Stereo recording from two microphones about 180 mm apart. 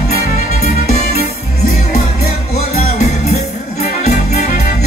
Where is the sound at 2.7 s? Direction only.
40° left (ahead or behind).